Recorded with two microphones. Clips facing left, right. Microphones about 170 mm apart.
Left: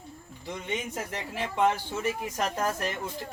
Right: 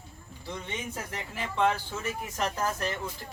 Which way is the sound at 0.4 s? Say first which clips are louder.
Left 3 dB; 20° left (ahead or behind).